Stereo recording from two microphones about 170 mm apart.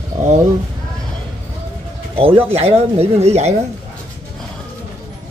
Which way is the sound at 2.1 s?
35° right (ahead or behind).